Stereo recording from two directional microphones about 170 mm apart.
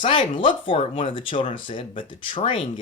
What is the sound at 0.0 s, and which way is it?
Speech, 30° left (ahead or behind).